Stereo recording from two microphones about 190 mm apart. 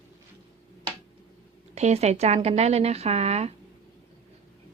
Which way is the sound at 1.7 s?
35° right (ahead or behind).